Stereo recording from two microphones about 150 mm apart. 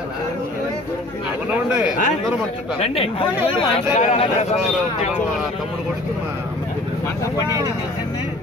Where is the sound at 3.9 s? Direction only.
50° left (ahead or behind).